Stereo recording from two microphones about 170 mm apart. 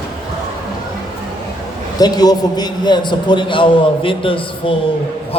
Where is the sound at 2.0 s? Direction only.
25° left (ahead or behind).